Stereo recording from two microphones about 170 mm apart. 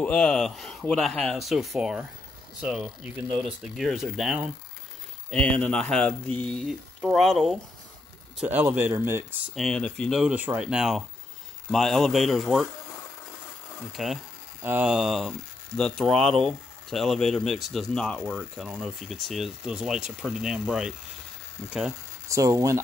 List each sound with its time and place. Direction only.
0.0 s speech: 5° left (ahead or behind)
8.4 s speech: 10° right (ahead or behind)
9.6 s speech: 5° left (ahead or behind)
13.9 s speech: centre (ahead or behind)
18.6 s speech: 5° right (ahead or behind)
22.3 s speech: 20° right (ahead or behind)